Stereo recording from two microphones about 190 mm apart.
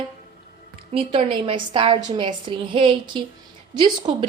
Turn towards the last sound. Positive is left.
turn(degrees=-25)  # may be behind; listen again after turning